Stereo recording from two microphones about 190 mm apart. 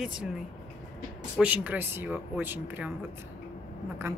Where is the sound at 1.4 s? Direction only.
10° right (ahead or behind).